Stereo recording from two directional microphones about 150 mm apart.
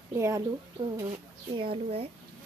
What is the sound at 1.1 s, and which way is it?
A woman's voice, 35° right (ahead or behind).